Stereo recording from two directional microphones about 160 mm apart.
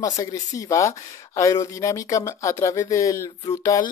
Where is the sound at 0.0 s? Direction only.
20° left (ahead or behind).